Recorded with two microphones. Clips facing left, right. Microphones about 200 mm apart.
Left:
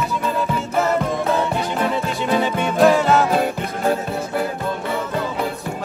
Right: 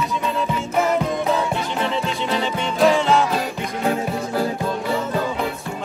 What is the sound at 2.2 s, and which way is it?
Music, 50° left (ahead or behind).